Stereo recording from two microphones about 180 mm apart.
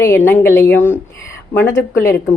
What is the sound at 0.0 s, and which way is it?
Speech, 10° left (ahead or behind).